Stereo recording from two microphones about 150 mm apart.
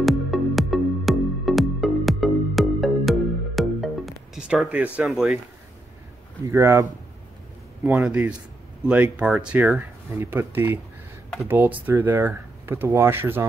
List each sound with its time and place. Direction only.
0.0 s music: centre (ahead or behind)
6.4 s speech: 20° right (ahead or behind)
8.0 s speech: 10° right (ahead or behind)